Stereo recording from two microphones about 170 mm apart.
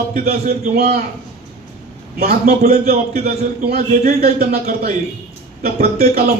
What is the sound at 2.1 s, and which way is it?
A man's voice, 65° right (ahead or behind).